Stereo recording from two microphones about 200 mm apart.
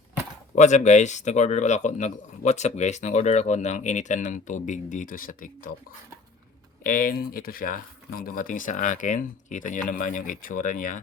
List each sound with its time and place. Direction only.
0.5 s speech: 35° left (ahead or behind)
6.8 s speech: 45° left (ahead or behind)